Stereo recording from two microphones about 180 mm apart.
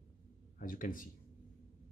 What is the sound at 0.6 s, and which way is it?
Speech, 50° left (ahead or behind).